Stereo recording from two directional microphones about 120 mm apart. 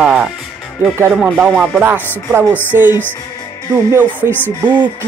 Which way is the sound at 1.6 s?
15° right (ahead or behind).